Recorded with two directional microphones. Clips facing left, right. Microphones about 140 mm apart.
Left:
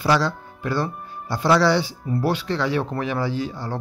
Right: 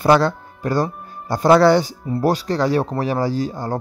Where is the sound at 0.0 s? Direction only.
50° right (ahead or behind).